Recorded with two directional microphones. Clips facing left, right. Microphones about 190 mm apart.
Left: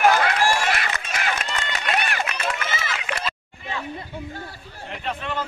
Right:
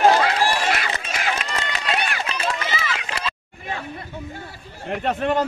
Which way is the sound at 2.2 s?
30° right (ahead or behind).